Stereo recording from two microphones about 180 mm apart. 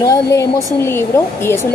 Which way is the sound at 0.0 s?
15° left (ahead or behind).